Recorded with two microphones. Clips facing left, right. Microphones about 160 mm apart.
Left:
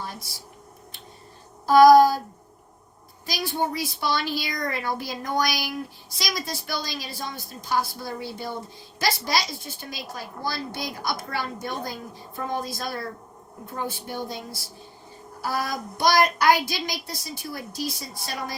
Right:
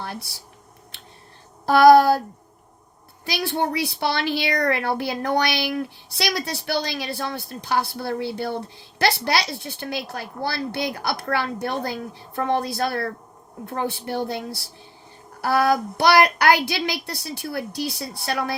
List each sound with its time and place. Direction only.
0.0 s a sound: 65° right (ahead or behind)
1.6 s speech: 65° right (ahead or behind)
3.2 s a woman's voice: 65° right (ahead or behind)